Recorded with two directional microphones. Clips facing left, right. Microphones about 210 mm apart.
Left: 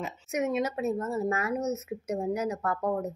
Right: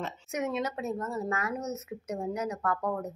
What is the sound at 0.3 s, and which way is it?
Speech, 20° left (ahead or behind).